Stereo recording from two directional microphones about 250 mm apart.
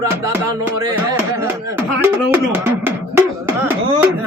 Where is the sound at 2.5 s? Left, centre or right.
Centre.